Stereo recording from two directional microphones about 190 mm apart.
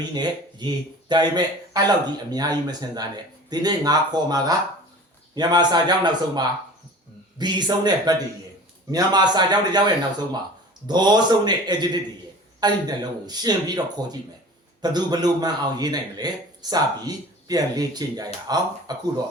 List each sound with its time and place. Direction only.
0.1 s a man's voice: 20° right (ahead or behind)